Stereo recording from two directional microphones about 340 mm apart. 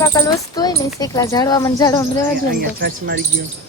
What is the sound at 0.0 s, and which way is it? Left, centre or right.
Speech, centre.